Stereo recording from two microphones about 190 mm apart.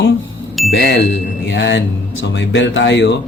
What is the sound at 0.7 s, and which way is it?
Speech, 65° left (ahead or behind).